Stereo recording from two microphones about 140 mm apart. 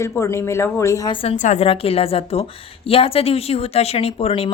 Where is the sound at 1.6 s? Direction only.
45° left (ahead or behind).